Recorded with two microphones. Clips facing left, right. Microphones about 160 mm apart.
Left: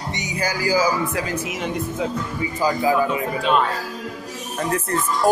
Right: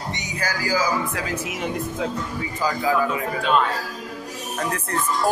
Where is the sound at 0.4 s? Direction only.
15° left (ahead or behind).